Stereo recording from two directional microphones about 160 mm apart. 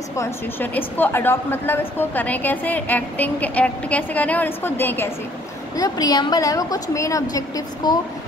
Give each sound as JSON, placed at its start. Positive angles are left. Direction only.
{"t": 0.1, "sound": "speech", "side_deg": 15}
{"t": 5.8, "sound": "a woman's voice", "side_deg": 25}